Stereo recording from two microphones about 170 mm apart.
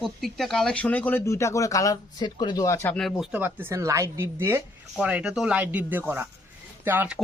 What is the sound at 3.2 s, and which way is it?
Speech, 10° right (ahead or behind).